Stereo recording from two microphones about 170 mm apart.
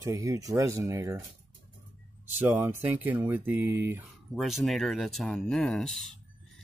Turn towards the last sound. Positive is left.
turn(degrees=0)  # may be behind; listen again after turning